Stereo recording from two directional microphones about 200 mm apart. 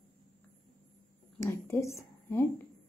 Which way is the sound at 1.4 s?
15° left (ahead or behind).